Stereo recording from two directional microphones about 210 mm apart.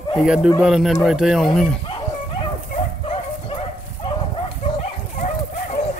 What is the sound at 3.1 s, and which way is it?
Bow-wow, 25° left (ahead or behind).